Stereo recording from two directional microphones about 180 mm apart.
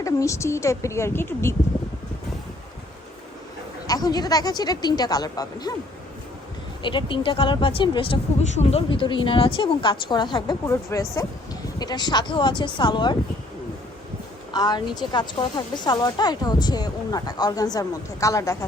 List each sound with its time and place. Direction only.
0.0 s speech: 15° left (ahead or behind)
3.8 s a woman's voice: 20° left (ahead or behind)
6.8 s a woman's voice: 25° left (ahead or behind)
14.5 s a woman's voice: 20° left (ahead or behind)